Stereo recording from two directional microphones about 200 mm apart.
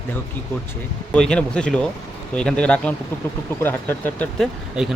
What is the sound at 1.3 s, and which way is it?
Speech, 5° left (ahead or behind).